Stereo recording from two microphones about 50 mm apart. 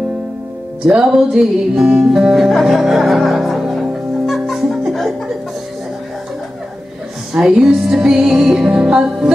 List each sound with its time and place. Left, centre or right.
0.8 s music: centre
7.3 s music: centre